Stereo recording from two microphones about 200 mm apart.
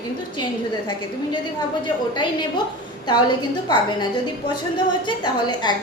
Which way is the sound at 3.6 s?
20° left (ahead or behind).